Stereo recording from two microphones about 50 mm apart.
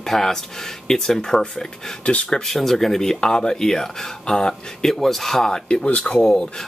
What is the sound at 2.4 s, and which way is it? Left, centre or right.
Speech, centre.